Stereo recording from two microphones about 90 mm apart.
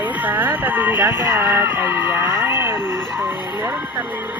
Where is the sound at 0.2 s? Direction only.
20° right (ahead or behind).